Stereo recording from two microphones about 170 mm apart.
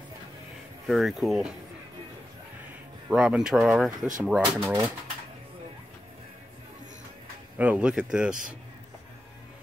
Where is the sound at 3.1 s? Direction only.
5° right (ahead or behind).